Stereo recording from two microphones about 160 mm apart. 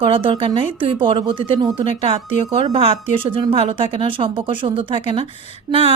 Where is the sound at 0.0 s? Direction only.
35° right (ahead or behind).